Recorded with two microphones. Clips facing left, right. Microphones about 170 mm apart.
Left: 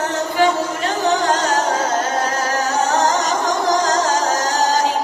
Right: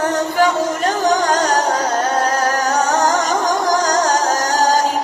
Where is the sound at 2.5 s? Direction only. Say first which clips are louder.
Right 1 dB; 45° right (ahead or behind).